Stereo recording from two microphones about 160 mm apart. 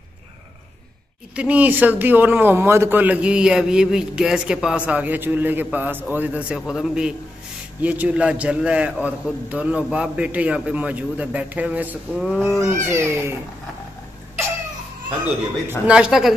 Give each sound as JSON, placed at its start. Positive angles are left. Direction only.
{"t": 1.3, "sound": "a man's voice", "side_deg": -10}
{"t": 12.5, "sound": "speech", "side_deg": -15}
{"t": 15.9, "sound": "a man's voice", "side_deg": -5}